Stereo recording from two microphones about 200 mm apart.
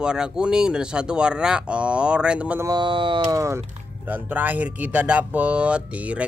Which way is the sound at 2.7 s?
25° right (ahead or behind).